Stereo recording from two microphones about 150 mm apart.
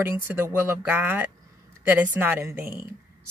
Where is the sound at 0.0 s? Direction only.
15° right (ahead or behind).